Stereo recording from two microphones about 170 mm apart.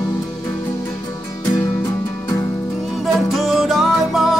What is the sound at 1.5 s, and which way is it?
Music, 10° left (ahead or behind).